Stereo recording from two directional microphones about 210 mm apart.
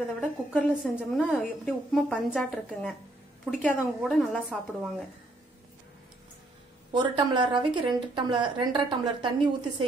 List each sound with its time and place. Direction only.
0.0 s a woman's voice: centre (ahead or behind)
6.9 s a woman's voice: 20° right (ahead or behind)